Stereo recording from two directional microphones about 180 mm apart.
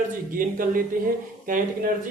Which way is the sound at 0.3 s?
50° right (ahead or behind).